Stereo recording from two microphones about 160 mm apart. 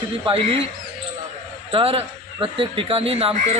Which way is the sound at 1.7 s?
35° right (ahead or behind).